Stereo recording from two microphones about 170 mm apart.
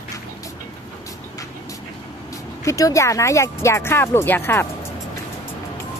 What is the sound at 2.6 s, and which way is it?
Speech, 20° left (ahead or behind).